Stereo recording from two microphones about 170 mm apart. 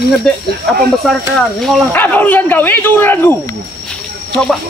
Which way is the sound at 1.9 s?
10° left (ahead or behind).